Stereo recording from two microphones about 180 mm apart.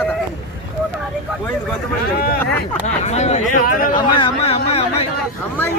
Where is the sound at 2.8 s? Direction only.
40° left (ahead or behind).